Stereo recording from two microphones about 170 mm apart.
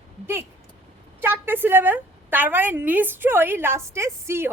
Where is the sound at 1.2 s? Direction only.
10° right (ahead or behind).